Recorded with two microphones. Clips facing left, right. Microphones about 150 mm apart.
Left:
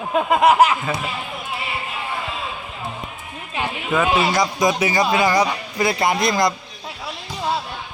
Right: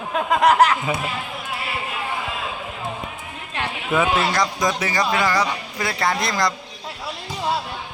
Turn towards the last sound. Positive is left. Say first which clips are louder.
# left 3 dB
turn(degrees=15)  # may be behind; listen again after turning